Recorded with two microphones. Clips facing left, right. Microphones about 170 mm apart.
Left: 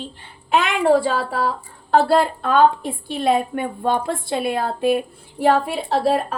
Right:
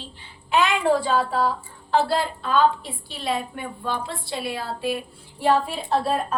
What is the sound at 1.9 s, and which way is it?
A woman's voice, 50° left (ahead or behind).